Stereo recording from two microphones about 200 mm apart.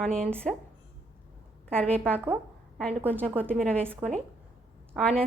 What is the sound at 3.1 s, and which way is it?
Speech, 5° left (ahead or behind).